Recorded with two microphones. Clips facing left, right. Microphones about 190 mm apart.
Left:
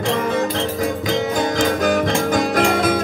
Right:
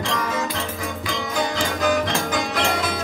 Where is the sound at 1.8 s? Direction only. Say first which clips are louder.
Left 4 dB; 45° left (ahead or behind).